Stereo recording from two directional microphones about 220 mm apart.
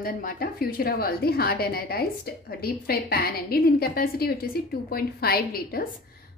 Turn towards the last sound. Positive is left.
turn(degrees=40)  # may be behind; listen again after turning